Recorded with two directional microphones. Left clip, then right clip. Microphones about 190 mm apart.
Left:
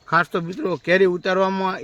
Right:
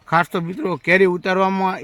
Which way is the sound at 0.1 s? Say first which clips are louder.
Right 1 dB; 45° right (ahead or behind).